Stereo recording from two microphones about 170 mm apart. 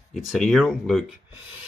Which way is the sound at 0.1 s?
Centre (ahead or behind).